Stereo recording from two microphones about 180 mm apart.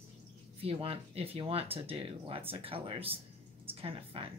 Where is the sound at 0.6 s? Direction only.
30° right (ahead or behind).